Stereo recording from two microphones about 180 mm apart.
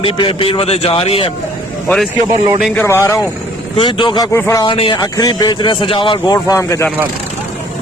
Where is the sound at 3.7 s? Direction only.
25° left (ahead or behind).